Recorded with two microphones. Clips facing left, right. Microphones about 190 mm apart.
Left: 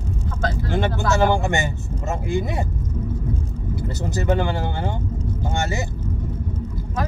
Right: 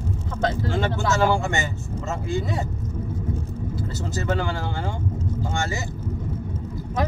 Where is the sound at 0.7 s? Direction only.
20° left (ahead or behind).